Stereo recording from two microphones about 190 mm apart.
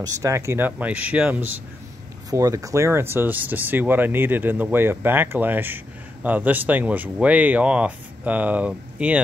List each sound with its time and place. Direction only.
0.0 s speech: 15° right (ahead or behind)